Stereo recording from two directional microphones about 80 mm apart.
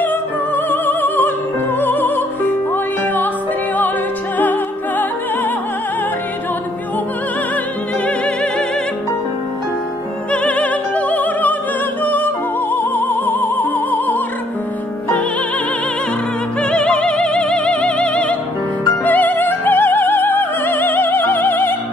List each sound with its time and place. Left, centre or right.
0.7 s music: left
4.4 s music: left
10.3 s music: centre
16.7 s music: centre